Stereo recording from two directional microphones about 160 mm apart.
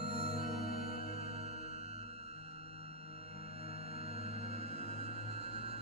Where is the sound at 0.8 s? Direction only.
40° right (ahead or behind).